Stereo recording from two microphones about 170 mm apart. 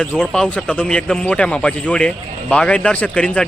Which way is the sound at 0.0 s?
5° left (ahead or behind).